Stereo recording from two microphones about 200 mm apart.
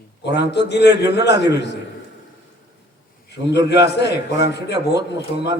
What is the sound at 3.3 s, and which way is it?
A man's voice, 60° left (ahead or behind).